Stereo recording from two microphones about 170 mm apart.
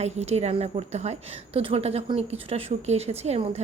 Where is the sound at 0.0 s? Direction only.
40° right (ahead or behind).